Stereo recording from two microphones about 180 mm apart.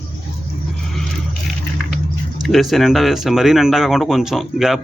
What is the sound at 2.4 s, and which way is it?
Speech, centre (ahead or behind).